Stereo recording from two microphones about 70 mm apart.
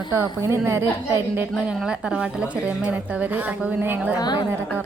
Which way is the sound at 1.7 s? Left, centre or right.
Centre.